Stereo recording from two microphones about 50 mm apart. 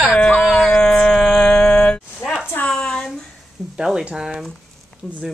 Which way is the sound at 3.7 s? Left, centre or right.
Centre.